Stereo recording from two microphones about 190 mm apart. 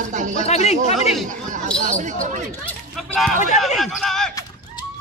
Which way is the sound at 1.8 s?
40° right (ahead or behind).